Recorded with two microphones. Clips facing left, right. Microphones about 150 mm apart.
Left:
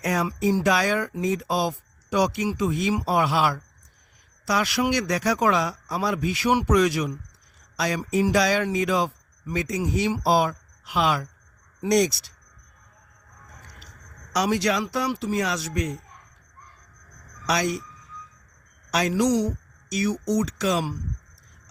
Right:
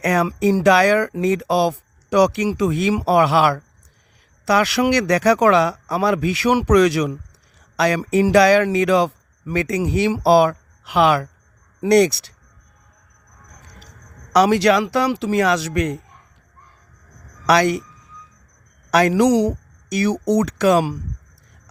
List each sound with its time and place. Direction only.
0.0 s speech: 70° right (ahead or behind)
14.3 s speech: 70° right (ahead or behind)
17.4 s speech: 65° right (ahead or behind)
18.9 s speech: 60° right (ahead or behind)